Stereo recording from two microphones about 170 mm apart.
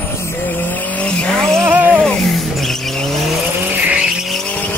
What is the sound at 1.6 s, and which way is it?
Vehicle, 10° right (ahead or behind).